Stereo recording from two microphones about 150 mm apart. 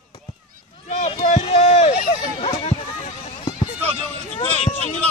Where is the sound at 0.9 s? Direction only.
45° left (ahead or behind).